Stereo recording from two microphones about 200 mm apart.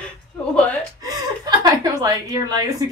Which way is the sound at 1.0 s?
20° right (ahead or behind).